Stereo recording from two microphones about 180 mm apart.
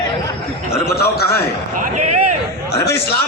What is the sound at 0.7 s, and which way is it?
Speech, 60° left (ahead or behind).